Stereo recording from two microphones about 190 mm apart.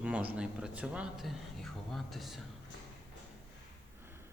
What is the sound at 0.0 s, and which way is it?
Speech, 5° right (ahead or behind).